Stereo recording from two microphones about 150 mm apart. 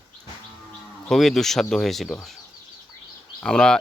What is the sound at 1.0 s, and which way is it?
Speech, 5° left (ahead or behind).